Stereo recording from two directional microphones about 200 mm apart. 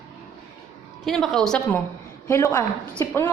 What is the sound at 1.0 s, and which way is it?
A woman's voice, centre (ahead or behind).